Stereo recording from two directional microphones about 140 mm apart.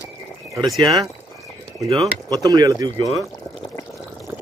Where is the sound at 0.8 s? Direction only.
25° right (ahead or behind).